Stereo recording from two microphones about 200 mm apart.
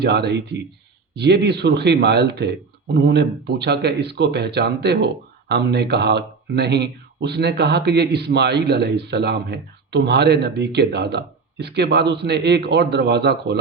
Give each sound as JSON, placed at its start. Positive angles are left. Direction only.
{"t": 0.0, "sound": "speech", "side_deg": -55}